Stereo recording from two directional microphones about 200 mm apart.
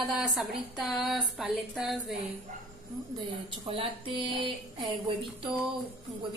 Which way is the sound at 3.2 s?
25° right (ahead or behind).